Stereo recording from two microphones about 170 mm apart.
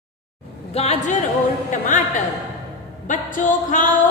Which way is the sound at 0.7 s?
40° left (ahead or behind).